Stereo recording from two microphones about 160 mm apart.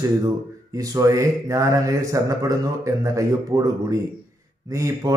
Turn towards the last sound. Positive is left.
turn(degrees=-20)  # may be behind; listen again after turning